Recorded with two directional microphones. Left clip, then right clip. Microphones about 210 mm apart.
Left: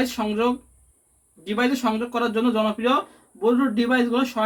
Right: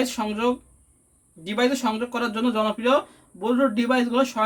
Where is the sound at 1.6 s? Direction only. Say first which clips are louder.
Even; 40° right (ahead or behind).